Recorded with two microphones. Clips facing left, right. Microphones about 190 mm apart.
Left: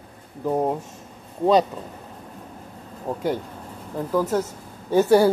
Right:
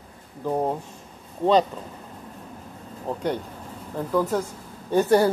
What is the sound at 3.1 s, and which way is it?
Speech, 5° left (ahead or behind).